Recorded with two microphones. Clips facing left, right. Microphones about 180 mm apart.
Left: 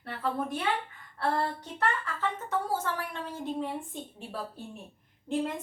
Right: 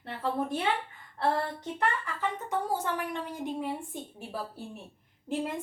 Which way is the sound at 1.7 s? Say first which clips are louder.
Even; 15° right (ahead or behind).